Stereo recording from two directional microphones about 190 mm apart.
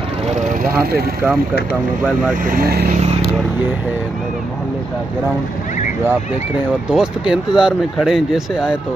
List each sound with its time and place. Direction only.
2.4 s speech: 50° right (ahead or behind)
6.9 s speech: 5° right (ahead or behind)